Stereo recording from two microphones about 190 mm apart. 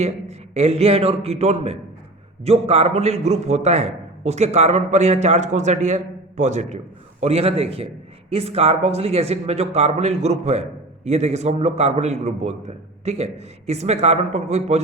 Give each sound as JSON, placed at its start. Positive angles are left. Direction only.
{"t": 0.0, "sound": "a man's voice", "side_deg": -35}